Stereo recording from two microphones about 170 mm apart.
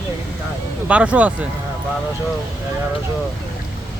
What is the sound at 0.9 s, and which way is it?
Speech, 5° right (ahead or behind).